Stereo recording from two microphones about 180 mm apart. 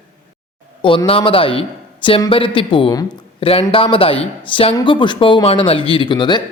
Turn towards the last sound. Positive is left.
turn(degrees=25)  # may be behind; listen again after turning